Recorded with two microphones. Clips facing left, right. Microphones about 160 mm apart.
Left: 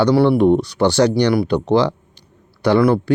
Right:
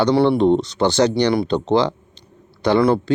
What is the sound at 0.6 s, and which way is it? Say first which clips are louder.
Speech: left 2 dB; 10° left (ahead or behind).